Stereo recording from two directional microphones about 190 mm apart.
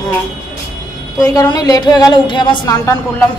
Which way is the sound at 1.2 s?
20° left (ahead or behind).